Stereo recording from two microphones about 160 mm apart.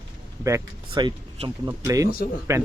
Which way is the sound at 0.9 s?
30° right (ahead or behind).